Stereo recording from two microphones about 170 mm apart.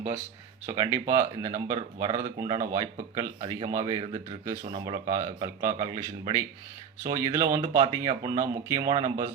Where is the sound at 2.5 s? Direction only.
55° right (ahead or behind).